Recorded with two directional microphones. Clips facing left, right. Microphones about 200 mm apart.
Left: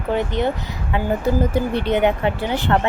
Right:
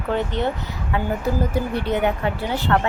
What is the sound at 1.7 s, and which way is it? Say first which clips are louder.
Speech: left 4 dB; 20° left (ahead or behind).